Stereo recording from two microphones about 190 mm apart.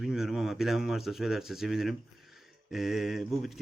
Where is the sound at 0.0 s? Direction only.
Centre (ahead or behind).